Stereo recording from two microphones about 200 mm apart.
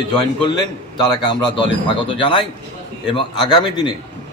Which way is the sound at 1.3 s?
25° left (ahead or behind).